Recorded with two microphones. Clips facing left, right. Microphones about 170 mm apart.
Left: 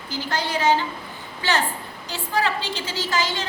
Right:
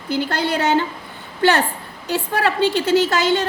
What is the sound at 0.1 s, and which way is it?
A woman's voice, 60° right (ahead or behind).